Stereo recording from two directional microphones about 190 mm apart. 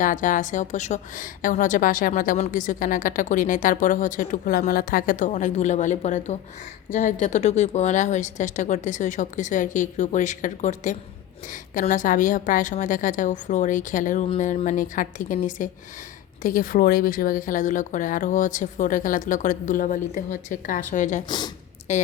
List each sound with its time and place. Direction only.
0.0 s a woman's voice: 45° left (ahead or behind)
21.2 s speech: 20° left (ahead or behind)
21.9 s a woman's voice: 35° left (ahead or behind)